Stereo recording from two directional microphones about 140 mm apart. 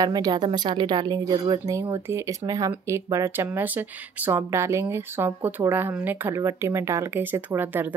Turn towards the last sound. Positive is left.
turn(degrees=-15)  # may be behind; listen again after turning